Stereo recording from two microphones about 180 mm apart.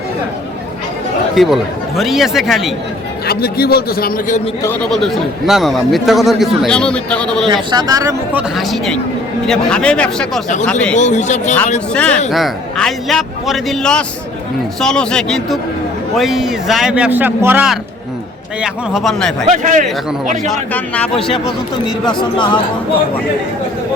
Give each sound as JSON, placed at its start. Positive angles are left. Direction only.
{"t": 1.4, "sound": "speech", "side_deg": 0}
{"t": 3.2, "sound": "a man's voice", "side_deg": 60}
{"t": 4.6, "sound": "speech", "side_deg": 10}
{"t": 7.4, "sound": "speech", "side_deg": -25}
{"t": 8.3, "sound": "speech", "side_deg": -5}
{"t": 10.9, "sound": "speech", "side_deg": 40}
{"t": 11.9, "sound": "speech", "side_deg": 5}
{"t": 19.5, "sound": "a man's voice", "side_deg": -40}
{"t": 20.5, "sound": "speech", "side_deg": 5}
{"t": 22.2, "sound": "speech", "side_deg": 25}